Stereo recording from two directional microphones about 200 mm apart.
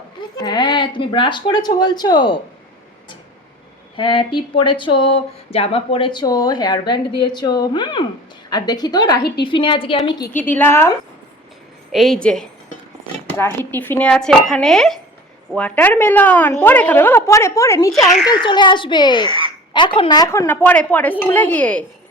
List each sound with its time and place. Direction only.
0.3 s speech: 20° left (ahead or behind)
3.9 s speech: 25° left (ahead or behind)
10.5 s a woman's voice: 10° left (ahead or behind)
11.9 s a woman's voice: centre (ahead or behind)